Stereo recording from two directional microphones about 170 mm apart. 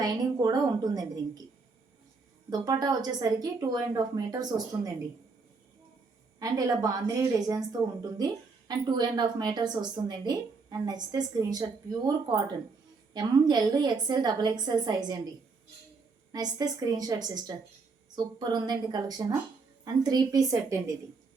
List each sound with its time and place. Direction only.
0.0 s a woman's voice: 20° right (ahead or behind)
2.5 s a woman's voice: 20° right (ahead or behind)
6.4 s a woman's voice: 20° right (ahead or behind)
16.3 s a woman's voice: 20° right (ahead or behind)